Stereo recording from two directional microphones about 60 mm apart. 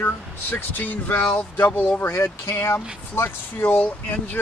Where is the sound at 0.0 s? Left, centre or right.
Left.